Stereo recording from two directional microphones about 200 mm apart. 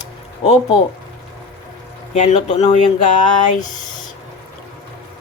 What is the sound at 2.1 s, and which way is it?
Speech, 35° left (ahead or behind).